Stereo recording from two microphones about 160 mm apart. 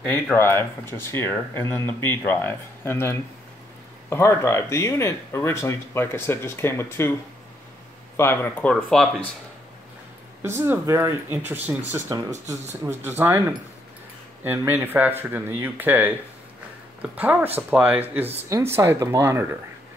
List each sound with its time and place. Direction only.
0.0 s speech: 5° left (ahead or behind)
0.4 s speech: 15° left (ahead or behind)
8.2 s speech: 15° left (ahead or behind)
10.4 s speech: 15° right (ahead or behind)
12.1 s speech: 25° right (ahead or behind)
13.0 s speech: 15° right (ahead or behind)
14.4 s speech: 10° right (ahead or behind)